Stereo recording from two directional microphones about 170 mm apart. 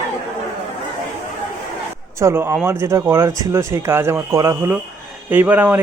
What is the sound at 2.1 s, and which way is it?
Speech, 15° right (ahead or behind).